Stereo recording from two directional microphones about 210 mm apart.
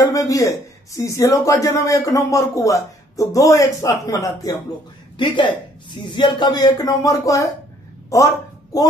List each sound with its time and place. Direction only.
0.0 s a man's voice: 15° left (ahead or behind)
8.7 s speech: 15° left (ahead or behind)